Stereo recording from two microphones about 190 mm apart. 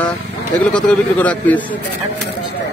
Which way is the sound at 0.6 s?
5° left (ahead or behind).